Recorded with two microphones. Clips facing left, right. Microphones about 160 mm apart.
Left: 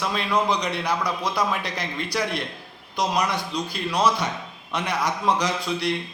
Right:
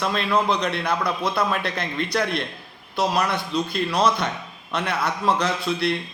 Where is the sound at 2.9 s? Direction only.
15° left (ahead or behind).